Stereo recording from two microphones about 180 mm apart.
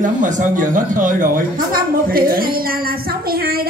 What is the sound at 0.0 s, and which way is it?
Speech, 45° right (ahead or behind).